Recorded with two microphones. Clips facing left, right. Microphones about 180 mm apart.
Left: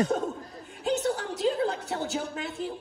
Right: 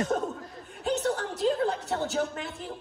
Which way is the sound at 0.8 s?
Centre (ahead or behind).